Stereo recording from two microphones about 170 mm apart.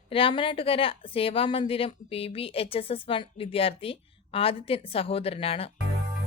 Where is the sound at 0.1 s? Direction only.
30° left (ahead or behind).